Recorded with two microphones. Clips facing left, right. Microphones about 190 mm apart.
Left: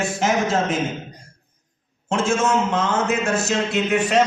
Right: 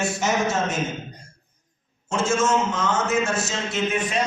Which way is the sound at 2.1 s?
60° left (ahead or behind).